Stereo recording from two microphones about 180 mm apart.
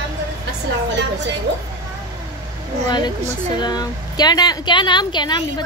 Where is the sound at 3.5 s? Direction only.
20° left (ahead or behind).